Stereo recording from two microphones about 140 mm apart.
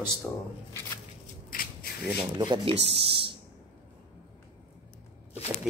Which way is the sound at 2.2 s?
30° right (ahead or behind).